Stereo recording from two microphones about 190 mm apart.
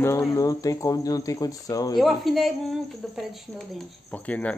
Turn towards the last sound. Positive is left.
turn(degrees=10)  # may be behind; listen again after turning